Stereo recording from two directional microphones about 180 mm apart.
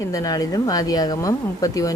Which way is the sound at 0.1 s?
20° left (ahead or behind).